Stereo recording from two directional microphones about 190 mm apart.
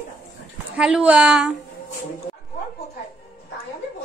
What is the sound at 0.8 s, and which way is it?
Speech, 5° right (ahead or behind).